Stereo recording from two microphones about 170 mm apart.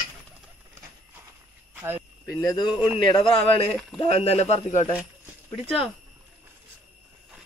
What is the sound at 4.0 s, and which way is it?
Speech, 35° left (ahead or behind).